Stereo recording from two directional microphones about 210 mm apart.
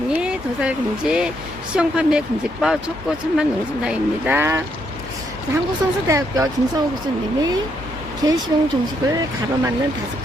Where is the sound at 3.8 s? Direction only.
10° right (ahead or behind).